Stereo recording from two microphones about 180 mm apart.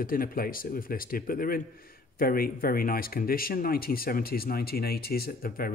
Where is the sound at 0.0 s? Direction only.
50° left (ahead or behind).